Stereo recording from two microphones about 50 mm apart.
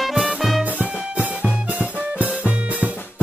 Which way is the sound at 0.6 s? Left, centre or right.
Right.